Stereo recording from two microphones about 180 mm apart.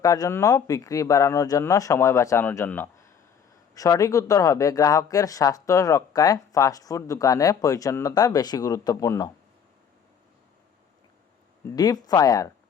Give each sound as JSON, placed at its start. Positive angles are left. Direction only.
{"t": 0.0, "sound": "speech", "side_deg": 20}
{"t": 11.6, "sound": "speech", "side_deg": 20}